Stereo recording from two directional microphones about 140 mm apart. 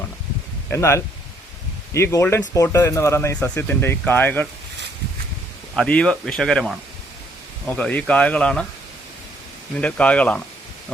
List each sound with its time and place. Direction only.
0.7 s speech: 20° left (ahead or behind)
5.7 s speech: 5° left (ahead or behind)
9.8 s speech: 10° left (ahead or behind)